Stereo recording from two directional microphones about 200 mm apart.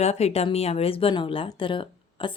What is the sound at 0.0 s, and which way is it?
A woman's voice, 30° left (ahead or behind).